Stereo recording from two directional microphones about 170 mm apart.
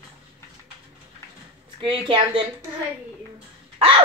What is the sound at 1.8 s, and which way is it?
Speech, 30° right (ahead or behind).